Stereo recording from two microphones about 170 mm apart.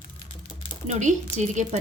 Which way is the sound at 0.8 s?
45° right (ahead or behind).